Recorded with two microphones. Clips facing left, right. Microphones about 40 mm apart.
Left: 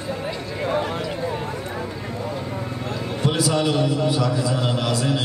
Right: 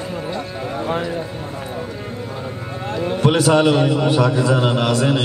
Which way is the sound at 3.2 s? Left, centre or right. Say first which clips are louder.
Right 7 dB; right.